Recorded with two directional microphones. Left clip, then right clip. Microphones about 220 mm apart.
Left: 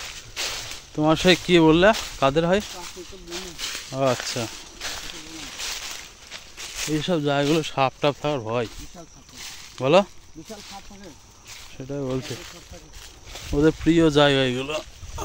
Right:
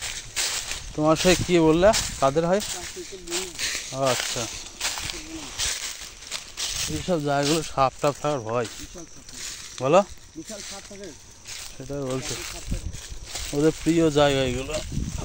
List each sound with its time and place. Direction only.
0.0 s a sound: 50° right (ahead or behind)
0.9 s speech: 25° left (ahead or behind)
3.3 s speech: 50° right (ahead or behind)
3.9 s speech: 35° left (ahead or behind)
4.7 s a sound: 45° right (ahead or behind)
5.6 s a sound: 35° right (ahead or behind)
7.1 s speech: 25° left (ahead or behind)
9.8 s speech: 30° left (ahead or behind)
11.9 s speech: 25° left (ahead or behind)
13.5 s speech: 25° left (ahead or behind)